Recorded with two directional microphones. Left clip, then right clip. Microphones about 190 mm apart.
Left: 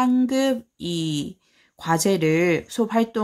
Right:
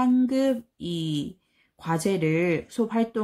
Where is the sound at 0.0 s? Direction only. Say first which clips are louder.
Left 2 dB; 30° left (ahead or behind).